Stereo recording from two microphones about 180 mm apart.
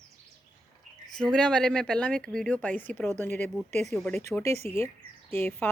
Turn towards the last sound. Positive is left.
turn(degrees=10)  # may be behind; listen again after turning